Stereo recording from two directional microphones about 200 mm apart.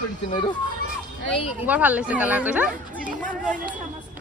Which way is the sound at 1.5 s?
5° right (ahead or behind).